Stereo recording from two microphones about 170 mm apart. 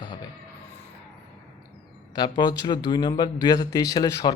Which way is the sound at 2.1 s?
25° left (ahead or behind).